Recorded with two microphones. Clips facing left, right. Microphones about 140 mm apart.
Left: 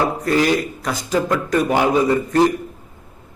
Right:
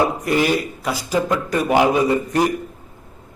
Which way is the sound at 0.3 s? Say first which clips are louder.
Left 1 dB; 15° right (ahead or behind).